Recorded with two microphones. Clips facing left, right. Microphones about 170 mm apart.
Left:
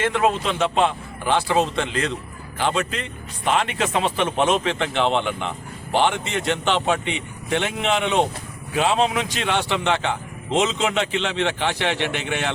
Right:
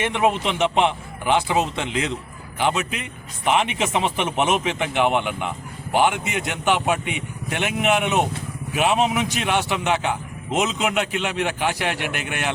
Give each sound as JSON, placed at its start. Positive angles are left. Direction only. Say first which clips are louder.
{"t": 0.0, "sound": "a man's voice", "louder": "even", "side_deg": -15}